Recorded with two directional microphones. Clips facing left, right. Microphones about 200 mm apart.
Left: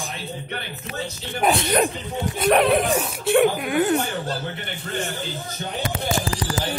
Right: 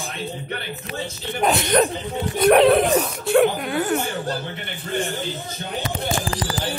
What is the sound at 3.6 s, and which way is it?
Speech, 15° left (ahead or behind).